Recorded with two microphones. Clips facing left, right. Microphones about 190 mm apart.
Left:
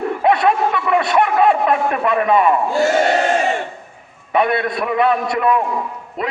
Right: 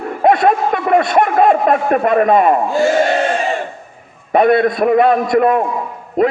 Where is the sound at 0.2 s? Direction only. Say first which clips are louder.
Right 4 dB; 40° right (ahead or behind).